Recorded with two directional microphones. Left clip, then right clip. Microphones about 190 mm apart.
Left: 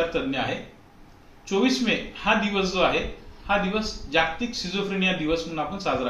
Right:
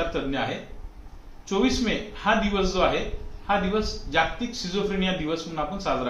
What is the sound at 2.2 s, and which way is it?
Speech, 15° right (ahead or behind).